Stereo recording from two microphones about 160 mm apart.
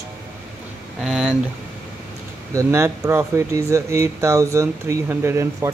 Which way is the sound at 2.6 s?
15° right (ahead or behind).